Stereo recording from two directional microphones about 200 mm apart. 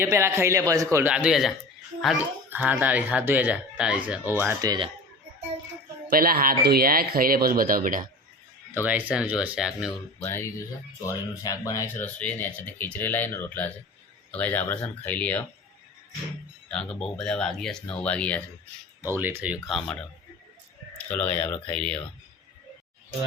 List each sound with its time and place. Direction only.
0.0 s speech: 15° right (ahead or behind)
6.1 s speech: 45° right (ahead or behind)
8.7 s speech: 10° right (ahead or behind)
10.2 s speech: 10° left (ahead or behind)
16.9 s speech: 5° left (ahead or behind)
19.0 s speech: 10° right (ahead or behind)
21.1 s speech: 5° left (ahead or behind)